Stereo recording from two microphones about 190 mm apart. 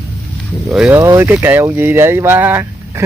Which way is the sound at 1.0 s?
15° right (ahead or behind).